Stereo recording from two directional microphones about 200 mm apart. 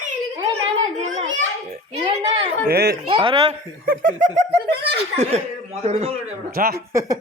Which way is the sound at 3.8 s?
40° right (ahead or behind).